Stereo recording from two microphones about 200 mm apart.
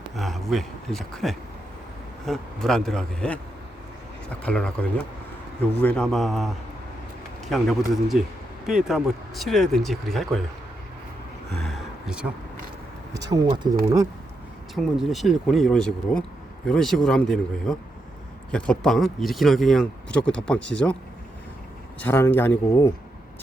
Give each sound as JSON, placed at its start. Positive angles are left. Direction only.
{"t": 0.2, "sound": "speech", "side_deg": 0}
{"t": 11.6, "sound": "a sound", "side_deg": -5}
{"t": 13.1, "sound": "speech", "side_deg": -20}
{"t": 14.8, "sound": "speech", "side_deg": 0}
{"t": 22.0, "sound": "speech", "side_deg": 10}